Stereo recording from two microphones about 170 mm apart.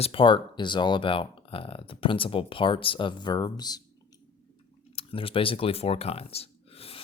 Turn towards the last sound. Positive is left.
turn(degrees=35)  # may be behind; listen again after turning